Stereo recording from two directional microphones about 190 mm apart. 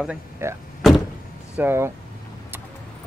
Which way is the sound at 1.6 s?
10° right (ahead or behind).